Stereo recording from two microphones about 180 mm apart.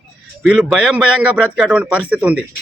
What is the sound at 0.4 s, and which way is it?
A man's voice, centre (ahead or behind).